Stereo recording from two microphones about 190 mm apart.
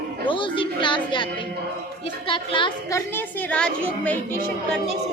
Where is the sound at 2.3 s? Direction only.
25° left (ahead or behind).